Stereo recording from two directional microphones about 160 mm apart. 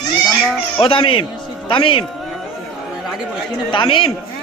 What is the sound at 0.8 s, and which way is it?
A man's voice, 30° left (ahead or behind).